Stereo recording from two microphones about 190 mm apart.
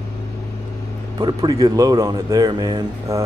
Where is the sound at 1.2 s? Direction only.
20° right (ahead or behind).